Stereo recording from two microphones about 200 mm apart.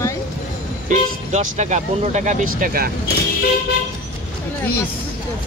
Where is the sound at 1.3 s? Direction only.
35° right (ahead or behind).